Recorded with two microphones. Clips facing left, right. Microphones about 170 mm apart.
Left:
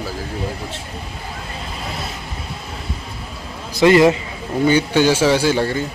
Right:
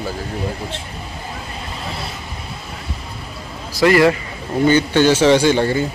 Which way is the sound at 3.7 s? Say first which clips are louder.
Left 1 dB; 20° left (ahead or behind).